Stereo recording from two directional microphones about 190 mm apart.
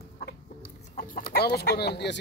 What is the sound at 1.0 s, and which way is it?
Speech, 45° left (ahead or behind).